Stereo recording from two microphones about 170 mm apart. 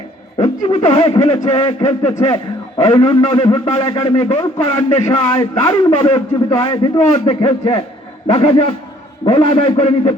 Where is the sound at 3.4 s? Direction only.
35° left (ahead or behind).